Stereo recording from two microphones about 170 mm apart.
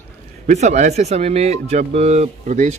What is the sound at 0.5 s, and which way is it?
Speech, 45° right (ahead or behind).